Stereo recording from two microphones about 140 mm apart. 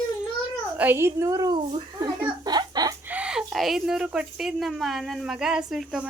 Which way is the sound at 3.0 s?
10° right (ahead or behind).